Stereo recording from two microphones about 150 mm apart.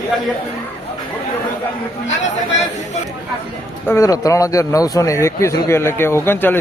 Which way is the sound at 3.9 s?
20° left (ahead or behind).